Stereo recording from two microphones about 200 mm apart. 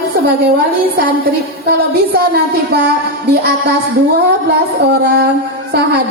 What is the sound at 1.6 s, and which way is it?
Music, 55° right (ahead or behind).